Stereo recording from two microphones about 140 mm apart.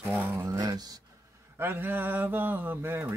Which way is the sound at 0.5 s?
30° right (ahead or behind).